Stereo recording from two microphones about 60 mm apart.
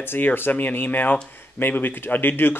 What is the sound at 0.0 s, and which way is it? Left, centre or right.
Speech, left.